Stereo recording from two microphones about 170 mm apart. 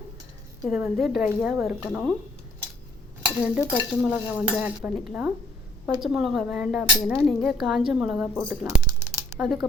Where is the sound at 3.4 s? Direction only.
10° right (ahead or behind).